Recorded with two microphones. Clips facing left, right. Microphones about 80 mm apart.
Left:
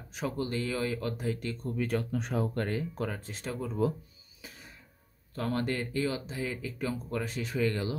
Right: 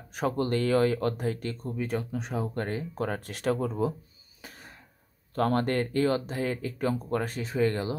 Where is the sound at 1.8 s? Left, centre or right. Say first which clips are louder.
Even; centre.